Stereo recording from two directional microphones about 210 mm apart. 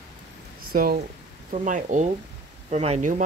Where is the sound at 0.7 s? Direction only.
45° right (ahead or behind).